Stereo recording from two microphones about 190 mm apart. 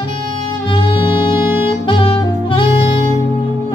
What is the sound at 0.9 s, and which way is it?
Saxophone, 25° left (ahead or behind).